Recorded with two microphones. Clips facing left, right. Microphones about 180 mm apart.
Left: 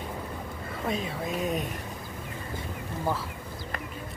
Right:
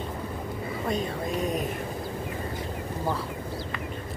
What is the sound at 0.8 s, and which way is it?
Speech, centre (ahead or behind).